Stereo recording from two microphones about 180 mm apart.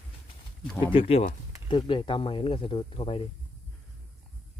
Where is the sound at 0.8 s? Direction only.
30° left (ahead or behind).